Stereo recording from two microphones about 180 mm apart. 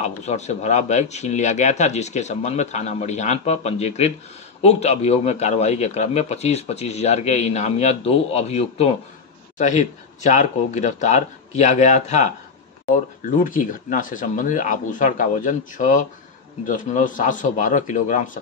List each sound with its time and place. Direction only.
0.0 s a man's voice: 40° left (ahead or behind)
13.4 s speech: 45° left (ahead or behind)